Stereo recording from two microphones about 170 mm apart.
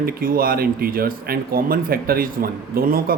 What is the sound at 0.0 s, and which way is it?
Speech, 60° right (ahead or behind).